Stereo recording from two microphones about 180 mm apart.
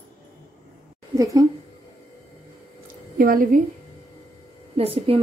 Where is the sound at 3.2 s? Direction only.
50° right (ahead or behind).